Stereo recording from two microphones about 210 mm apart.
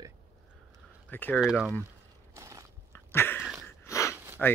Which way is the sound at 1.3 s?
5° right (ahead or behind).